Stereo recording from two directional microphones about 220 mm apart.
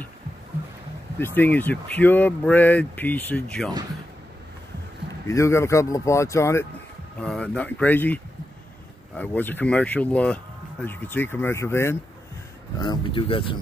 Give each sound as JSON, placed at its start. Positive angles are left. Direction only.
{"t": 1.2, "sound": "speech", "side_deg": 10}
{"t": 5.2, "sound": "speech", "side_deg": 15}
{"t": 12.8, "sound": "speech", "side_deg": 20}